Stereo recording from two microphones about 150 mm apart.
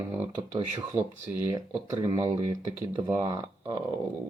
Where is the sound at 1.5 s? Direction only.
25° right (ahead or behind).